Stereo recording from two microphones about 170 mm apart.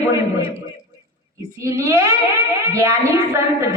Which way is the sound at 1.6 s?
15° right (ahead or behind).